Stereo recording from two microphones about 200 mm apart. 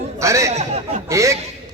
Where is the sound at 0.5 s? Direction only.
35° right (ahead or behind).